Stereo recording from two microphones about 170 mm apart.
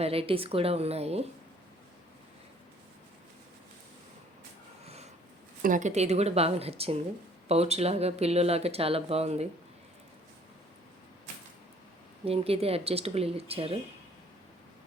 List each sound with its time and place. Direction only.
0.0 s speech: 35° right (ahead or behind)
5.6 s speech: 45° right (ahead or behind)
12.2 s speech: 35° right (ahead or behind)